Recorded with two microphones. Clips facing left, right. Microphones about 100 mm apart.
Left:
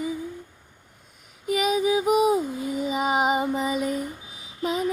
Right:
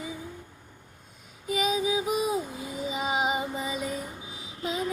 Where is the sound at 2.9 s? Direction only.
50° left (ahead or behind).